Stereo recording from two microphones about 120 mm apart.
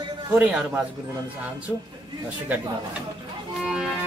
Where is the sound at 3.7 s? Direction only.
5° right (ahead or behind).